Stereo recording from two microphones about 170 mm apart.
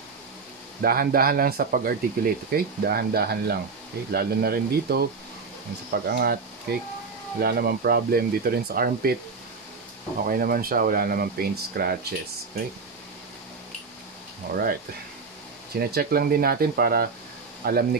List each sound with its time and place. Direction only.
0.8 s speech: 60° right (ahead or behind)
7.3 s speech: 65° right (ahead or behind)
10.2 s speech: 60° right (ahead or behind)
14.5 s speech: 60° right (ahead or behind)
15.8 s speech: 65° right (ahead or behind)